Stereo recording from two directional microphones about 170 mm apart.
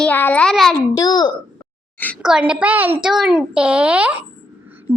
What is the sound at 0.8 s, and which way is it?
Speech, 20° left (ahead or behind).